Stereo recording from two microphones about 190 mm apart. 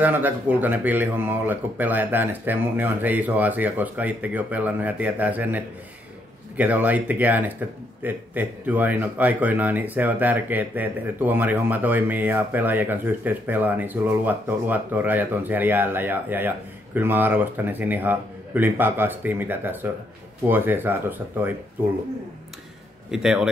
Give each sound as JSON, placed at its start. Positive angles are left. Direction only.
{"t": 0.0, "sound": "speech", "side_deg": -10}
{"t": 23.1, "sound": "a man's voice", "side_deg": -5}